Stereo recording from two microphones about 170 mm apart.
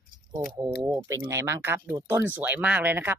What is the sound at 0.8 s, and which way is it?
Speech, 15° right (ahead or behind).